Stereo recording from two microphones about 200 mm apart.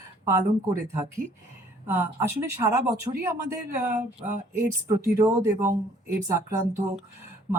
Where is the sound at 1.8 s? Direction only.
10° right (ahead or behind).